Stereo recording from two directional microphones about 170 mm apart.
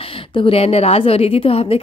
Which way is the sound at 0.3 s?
30° left (ahead or behind).